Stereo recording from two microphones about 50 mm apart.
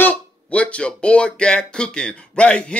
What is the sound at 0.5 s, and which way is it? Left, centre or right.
Speech, left.